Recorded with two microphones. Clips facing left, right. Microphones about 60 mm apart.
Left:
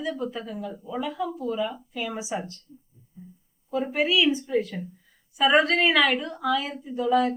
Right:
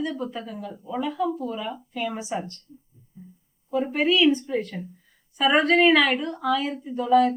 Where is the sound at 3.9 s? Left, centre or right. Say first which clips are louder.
Right 3 dB; centre.